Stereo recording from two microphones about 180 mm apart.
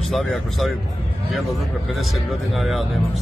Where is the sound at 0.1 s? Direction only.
Centre (ahead or behind).